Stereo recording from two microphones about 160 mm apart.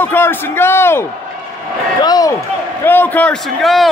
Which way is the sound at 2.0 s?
25° left (ahead or behind).